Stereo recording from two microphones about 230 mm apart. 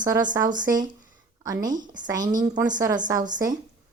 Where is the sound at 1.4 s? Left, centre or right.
Centre.